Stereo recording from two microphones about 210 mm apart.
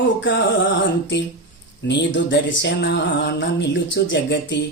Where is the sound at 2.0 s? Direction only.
60° left (ahead or behind).